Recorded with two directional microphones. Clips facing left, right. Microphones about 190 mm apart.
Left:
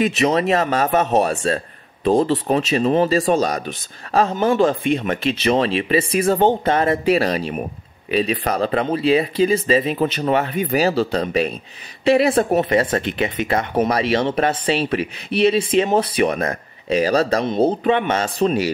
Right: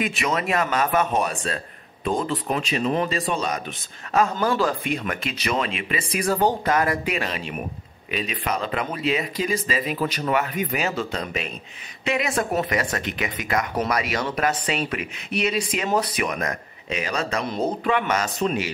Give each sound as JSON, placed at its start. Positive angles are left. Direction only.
{"t": 0.0, "sound": "speech", "side_deg": 30}